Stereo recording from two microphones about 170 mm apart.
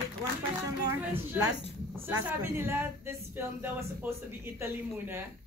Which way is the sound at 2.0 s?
15° right (ahead or behind).